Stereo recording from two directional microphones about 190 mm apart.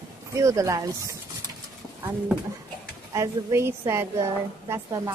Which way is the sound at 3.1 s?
15° right (ahead or behind).